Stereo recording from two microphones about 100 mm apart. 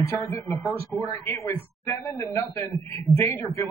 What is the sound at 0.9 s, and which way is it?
A man's voice, 30° left (ahead or behind).